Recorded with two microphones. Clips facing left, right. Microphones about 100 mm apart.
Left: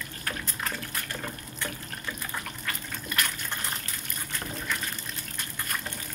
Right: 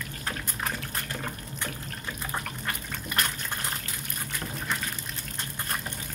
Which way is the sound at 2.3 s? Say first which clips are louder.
Right 5 dB; 30° right (ahead or behind).